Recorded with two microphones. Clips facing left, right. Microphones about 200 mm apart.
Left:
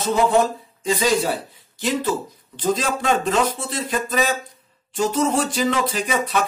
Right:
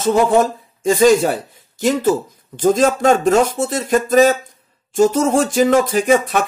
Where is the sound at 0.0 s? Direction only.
45° right (ahead or behind).